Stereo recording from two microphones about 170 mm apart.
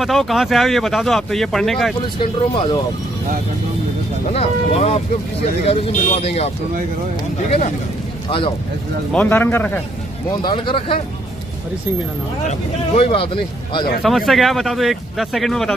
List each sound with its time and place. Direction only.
0.0 s speech: centre (ahead or behind)
2.0 s speech: 30° left (ahead or behind)
4.3 s speech: 35° left (ahead or behind)
8.3 s speech: 30° left (ahead or behind)
9.1 s speech: 10° left (ahead or behind)
10.4 s speech: 30° left (ahead or behind)
12.4 s speech: 40° left (ahead or behind)
14.0 s speech: centre (ahead or behind)